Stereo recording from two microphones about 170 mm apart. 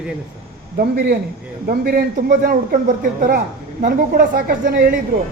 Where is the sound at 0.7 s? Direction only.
70° right (ahead or behind).